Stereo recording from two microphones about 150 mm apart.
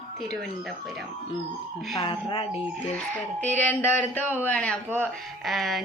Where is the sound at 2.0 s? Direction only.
40° left (ahead or behind).